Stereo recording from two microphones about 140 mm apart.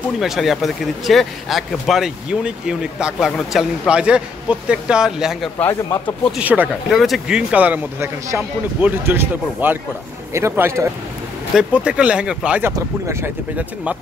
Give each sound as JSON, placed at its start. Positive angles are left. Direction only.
{"t": 0.2, "sound": "speech", "side_deg": 0}
{"t": 5.6, "sound": "speech", "side_deg": 15}
{"t": 6.3, "sound": "a man's voice", "side_deg": -10}
{"t": 6.9, "sound": "a man's voice", "side_deg": 0}
{"t": 11.5, "sound": "a man's voice", "side_deg": -10}